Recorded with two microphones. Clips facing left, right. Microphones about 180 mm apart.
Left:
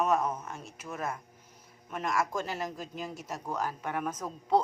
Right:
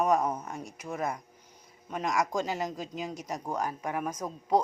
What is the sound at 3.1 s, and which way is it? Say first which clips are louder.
Speech: right 2 dB; 15° right (ahead or behind).